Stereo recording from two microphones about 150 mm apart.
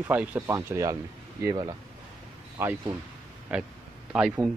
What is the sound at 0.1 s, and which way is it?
Speech, 10° right (ahead or behind).